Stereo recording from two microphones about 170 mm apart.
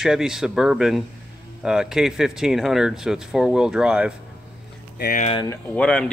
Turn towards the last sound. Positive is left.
turn(degrees=5)  # may be behind; listen again after turning